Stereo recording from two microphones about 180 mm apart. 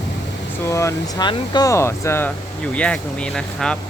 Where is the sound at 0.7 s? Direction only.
20° left (ahead or behind); by 3.8 s 5° left (ahead or behind).